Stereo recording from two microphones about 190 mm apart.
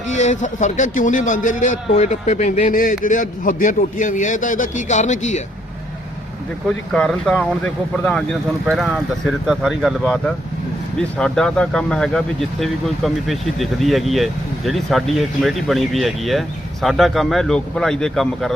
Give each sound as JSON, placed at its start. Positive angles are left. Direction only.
{"t": 0.1, "sound": "a man's voice", "side_deg": 40}
{"t": 6.7, "sound": "speech", "side_deg": 5}